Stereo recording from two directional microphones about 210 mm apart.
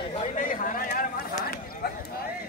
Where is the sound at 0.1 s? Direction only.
30° left (ahead or behind).